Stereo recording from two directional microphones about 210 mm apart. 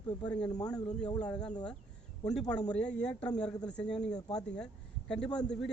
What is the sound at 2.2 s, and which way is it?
A man's voice, 5° left (ahead or behind).